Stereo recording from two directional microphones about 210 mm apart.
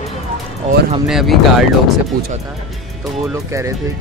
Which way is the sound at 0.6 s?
30° right (ahead or behind).